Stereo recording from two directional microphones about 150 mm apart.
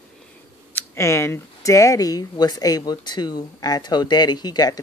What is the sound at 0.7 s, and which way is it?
Speech, 20° left (ahead or behind).